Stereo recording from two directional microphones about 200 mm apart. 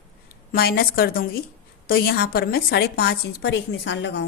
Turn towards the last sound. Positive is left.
turn(degrees=60)  # may be behind; listen again after turning